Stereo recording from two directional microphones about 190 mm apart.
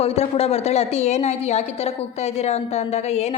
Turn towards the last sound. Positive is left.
turn(degrees=35)  # may be behind; listen again after turning